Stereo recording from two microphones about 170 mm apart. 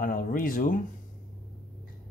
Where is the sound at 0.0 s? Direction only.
55° left (ahead or behind).